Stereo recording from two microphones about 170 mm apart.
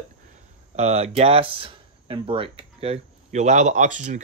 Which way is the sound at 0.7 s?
40° right (ahead or behind).